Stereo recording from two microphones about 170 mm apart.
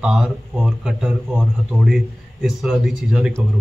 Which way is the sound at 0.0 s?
5° right (ahead or behind).